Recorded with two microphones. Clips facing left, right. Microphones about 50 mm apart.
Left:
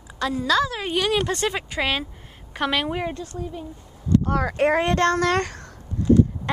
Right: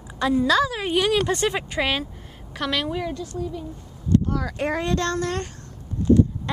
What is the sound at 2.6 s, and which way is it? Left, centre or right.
Speech, centre.